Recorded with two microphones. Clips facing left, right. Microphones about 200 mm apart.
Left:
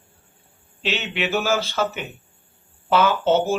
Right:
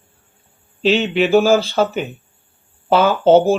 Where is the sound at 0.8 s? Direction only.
35° right (ahead or behind).